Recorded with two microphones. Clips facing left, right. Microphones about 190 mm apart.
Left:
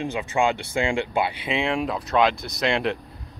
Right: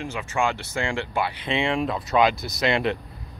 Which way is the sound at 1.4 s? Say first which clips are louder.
Even; 5° left (ahead or behind).